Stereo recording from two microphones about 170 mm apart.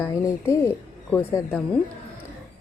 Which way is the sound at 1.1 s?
10° left (ahead or behind).